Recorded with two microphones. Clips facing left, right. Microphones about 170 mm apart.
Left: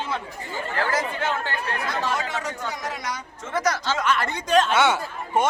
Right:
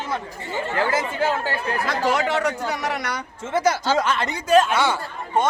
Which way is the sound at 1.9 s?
75° right (ahead or behind).